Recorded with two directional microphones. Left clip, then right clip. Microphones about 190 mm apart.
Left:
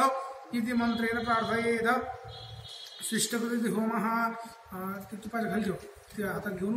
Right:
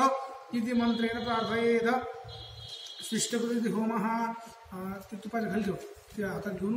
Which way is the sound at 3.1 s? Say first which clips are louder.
Even; 20° right (ahead or behind).